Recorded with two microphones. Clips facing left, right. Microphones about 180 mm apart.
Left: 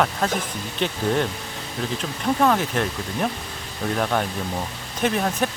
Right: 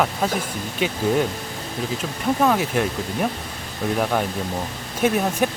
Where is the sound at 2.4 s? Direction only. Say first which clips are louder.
Right 1 dB; 5° right (ahead or behind).